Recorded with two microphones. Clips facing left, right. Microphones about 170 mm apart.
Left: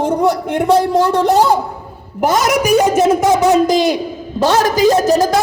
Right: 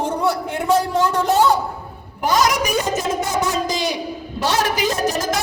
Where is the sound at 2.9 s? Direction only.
75° left (ahead or behind); by 4.0 s 55° left (ahead or behind).